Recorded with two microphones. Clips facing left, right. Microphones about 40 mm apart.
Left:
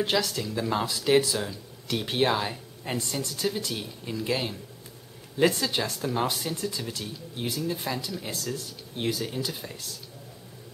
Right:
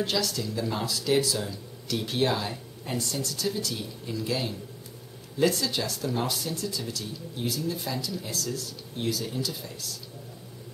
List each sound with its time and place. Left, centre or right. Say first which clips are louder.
0.0 s speech: left 2 dB; left